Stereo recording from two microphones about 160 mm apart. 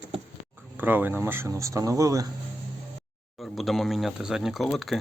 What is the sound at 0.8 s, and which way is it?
Speech, 10° right (ahead or behind).